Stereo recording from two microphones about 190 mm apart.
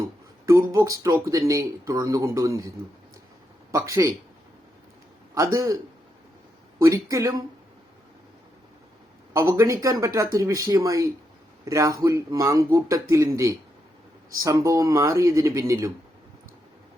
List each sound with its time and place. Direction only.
0.0 s a sound: 15° right (ahead or behind)
0.7 s speech: 15° right (ahead or behind)
5.5 s speech: 15° right (ahead or behind)
9.3 s speech: 15° right (ahead or behind)